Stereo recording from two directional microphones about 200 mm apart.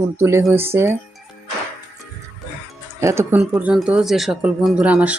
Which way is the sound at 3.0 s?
15° right (ahead or behind).